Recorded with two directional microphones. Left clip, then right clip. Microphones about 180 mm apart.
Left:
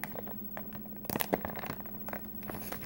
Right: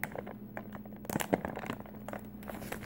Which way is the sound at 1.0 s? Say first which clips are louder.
Even; 5° right (ahead or behind).